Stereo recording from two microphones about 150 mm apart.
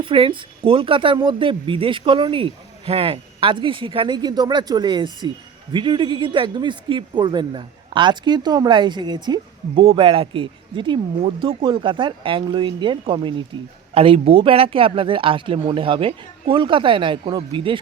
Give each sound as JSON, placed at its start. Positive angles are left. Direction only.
{"t": 0.0, "sound": "a man's voice", "side_deg": -35}